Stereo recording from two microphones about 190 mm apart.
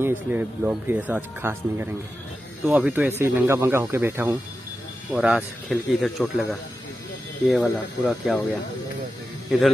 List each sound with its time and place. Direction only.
0.0 s speech: 10° right (ahead or behind)